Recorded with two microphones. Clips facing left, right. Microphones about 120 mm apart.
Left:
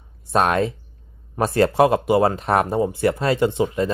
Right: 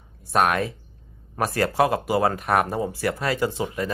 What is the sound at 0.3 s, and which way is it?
Speech, 25° left (ahead or behind).